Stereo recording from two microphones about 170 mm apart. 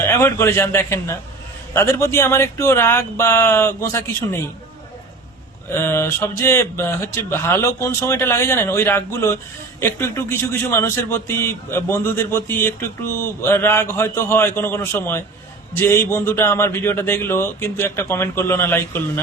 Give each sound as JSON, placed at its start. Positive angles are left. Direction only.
{"t": 0.1, "sound": "a man's voice", "side_deg": 15}
{"t": 5.7, "sound": "a man's voice", "side_deg": 15}